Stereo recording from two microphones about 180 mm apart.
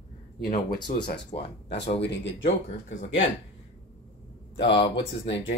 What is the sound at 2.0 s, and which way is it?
Speech, 75° left (ahead or behind).